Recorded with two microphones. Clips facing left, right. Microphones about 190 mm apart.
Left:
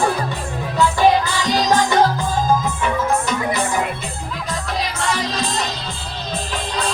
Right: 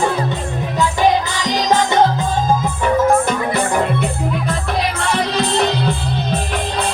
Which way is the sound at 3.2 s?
55° right (ahead or behind).